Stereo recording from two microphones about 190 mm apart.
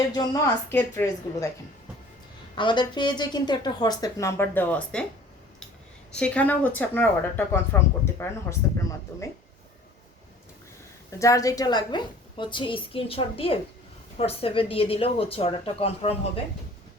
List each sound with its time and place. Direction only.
0.7 s speech: 10° left (ahead or behind)
2.6 s a woman's voice: 25° left (ahead or behind); by 5.0 s 5° left (ahead or behind)
6.1 s speech: 5° left (ahead or behind)
11.2 s a woman's voice: 15° left (ahead or behind)